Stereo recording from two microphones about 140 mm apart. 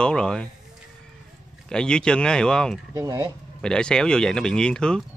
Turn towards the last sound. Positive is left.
turn(degrees=5)  # may be behind; listen again after turning